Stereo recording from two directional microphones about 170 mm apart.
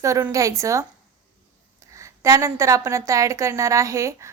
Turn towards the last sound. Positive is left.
turn(degrees=-15)  # may be behind; listen again after turning